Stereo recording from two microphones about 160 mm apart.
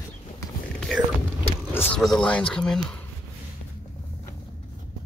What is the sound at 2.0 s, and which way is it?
Speech, 5° left (ahead or behind).